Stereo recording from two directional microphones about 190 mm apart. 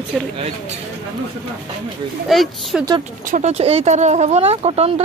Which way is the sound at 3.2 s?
40° right (ahead or behind).